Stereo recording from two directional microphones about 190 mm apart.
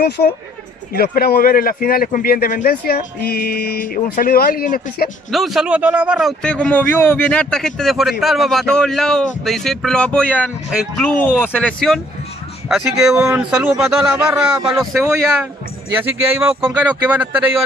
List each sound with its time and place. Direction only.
0.0 s speech: 60° left (ahead or behind)
5.3 s a man's voice: centre (ahead or behind)
6.4 s a man's voice: 5° left (ahead or behind)